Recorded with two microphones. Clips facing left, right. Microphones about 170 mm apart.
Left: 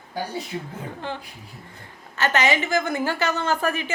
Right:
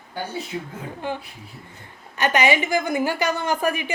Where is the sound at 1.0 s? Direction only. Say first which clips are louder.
Right 3 dB; 15° right (ahead or behind).